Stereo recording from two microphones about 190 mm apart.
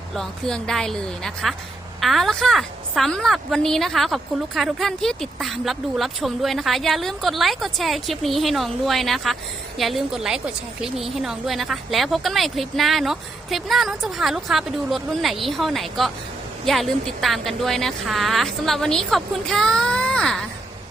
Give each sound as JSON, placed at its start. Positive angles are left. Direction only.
{"t": 0.1, "sound": "a woman's voice", "side_deg": 0}